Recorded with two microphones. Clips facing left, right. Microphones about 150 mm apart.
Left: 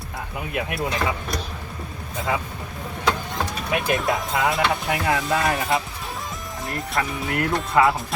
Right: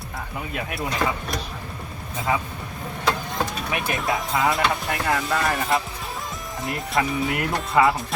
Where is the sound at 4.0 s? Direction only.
Centre (ahead or behind).